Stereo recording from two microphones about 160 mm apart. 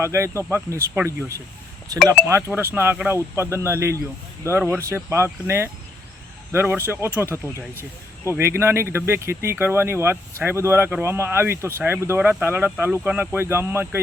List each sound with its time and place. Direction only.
0.0 s speech: 15° right (ahead or behind)
8.4 s speech: 15° right (ahead or behind)